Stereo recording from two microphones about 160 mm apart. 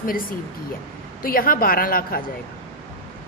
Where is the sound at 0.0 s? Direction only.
65° left (ahead or behind).